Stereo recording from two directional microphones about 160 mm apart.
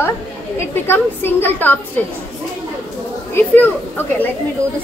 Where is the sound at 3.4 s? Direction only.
10° left (ahead or behind).